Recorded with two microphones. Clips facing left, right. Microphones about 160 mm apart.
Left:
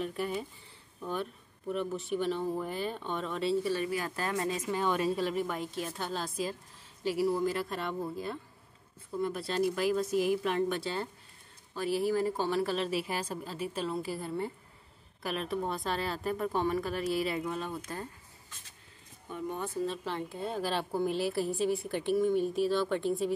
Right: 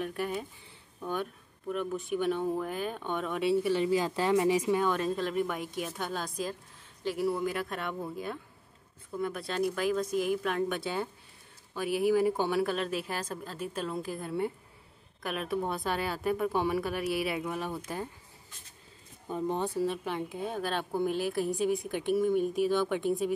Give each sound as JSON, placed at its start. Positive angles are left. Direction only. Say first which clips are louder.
{"t": 0.1, "sound": "a woman's voice", "louder": "right 1 dB", "side_deg": 0}
{"t": 3.0, "sound": "speech", "louder": "right 2 dB", "side_deg": -10}
{"t": 4.7, "sound": "a woman's voice", "louder": "right 1 dB", "side_deg": 5}
{"t": 12.1, "sound": "a woman's voice", "louder": "right 3 dB", "side_deg": -10}
{"t": 19.2, "sound": "speech", "louder": "right 5 dB", "side_deg": -35}
{"t": 19.8, "sound": "a woman's voice", "louder": "right 3 dB", "side_deg": -10}
{"t": 22.7, "sound": "speech", "louder": "right 1 dB", "side_deg": -15}
{"t": 22.9, "sound": "a woman's voice", "louder": "right 1 dB", "side_deg": -5}